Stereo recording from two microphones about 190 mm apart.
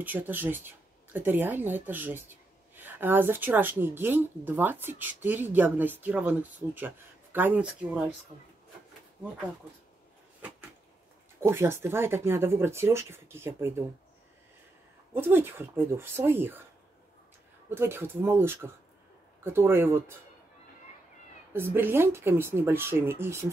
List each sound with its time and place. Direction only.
0.0 s speech: 10° right (ahead or behind)
11.4 s speech: 10° right (ahead or behind)
15.1 s speech: 10° right (ahead or behind)
17.6 s speech: 10° right (ahead or behind)
21.5 s speech: 10° right (ahead or behind)